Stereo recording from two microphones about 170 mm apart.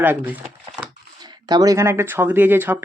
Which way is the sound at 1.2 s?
25° right (ahead or behind).